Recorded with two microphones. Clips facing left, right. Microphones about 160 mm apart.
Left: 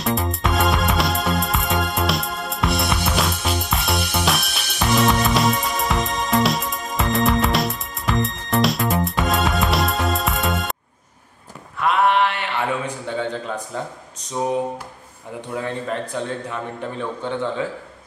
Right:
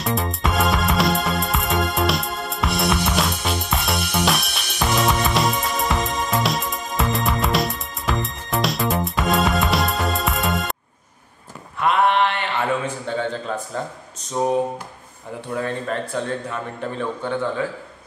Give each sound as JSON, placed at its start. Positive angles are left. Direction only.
{"t": 0.0, "sound": "music", "side_deg": 0}
{"t": 11.8, "sound": "mantra", "side_deg": 5}
{"t": 14.4, "sound": "speech", "side_deg": 0}
{"t": 15.5, "sound": "a man's voice", "side_deg": 15}